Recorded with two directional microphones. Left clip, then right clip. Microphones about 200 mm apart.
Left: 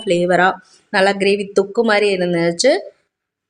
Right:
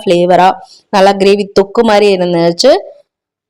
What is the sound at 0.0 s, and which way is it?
A woman's voice, 30° right (ahead or behind).